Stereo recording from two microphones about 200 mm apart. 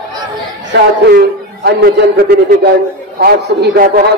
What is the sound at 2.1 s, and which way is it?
A man's voice, 55° right (ahead or behind).